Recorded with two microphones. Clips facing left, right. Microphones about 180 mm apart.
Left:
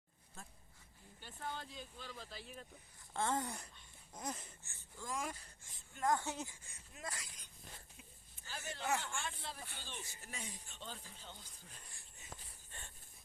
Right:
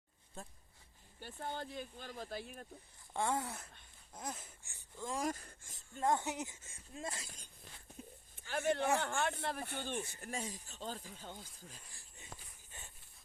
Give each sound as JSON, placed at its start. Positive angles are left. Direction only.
{"t": 1.5, "sound": "speech", "side_deg": -55}
{"t": 3.1, "sound": "speech", "side_deg": -15}
{"t": 5.1, "sound": "speech", "side_deg": -40}
{"t": 6.0, "sound": "speech", "side_deg": -25}
{"t": 8.0, "sound": "a sound", "side_deg": -40}
{"t": 8.4, "sound": "speech", "side_deg": -60}
{"t": 10.3, "sound": "speech", "side_deg": -40}
{"t": 11.8, "sound": "speech", "side_deg": 0}